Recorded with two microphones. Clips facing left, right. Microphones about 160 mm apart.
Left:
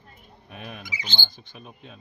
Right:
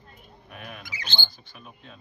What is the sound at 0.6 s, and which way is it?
Speech, 20° left (ahead or behind).